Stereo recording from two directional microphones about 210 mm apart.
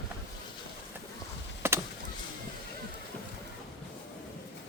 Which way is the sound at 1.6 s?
10° right (ahead or behind).